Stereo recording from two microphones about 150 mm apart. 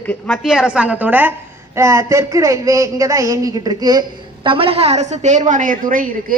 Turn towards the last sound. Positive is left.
turn(degrees=-65)  # may be behind; listen again after turning